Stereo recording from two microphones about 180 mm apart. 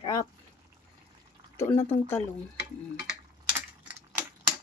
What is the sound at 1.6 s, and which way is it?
Speech, 15° left (ahead or behind).